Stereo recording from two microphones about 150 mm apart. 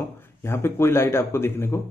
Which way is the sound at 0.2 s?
15° left (ahead or behind).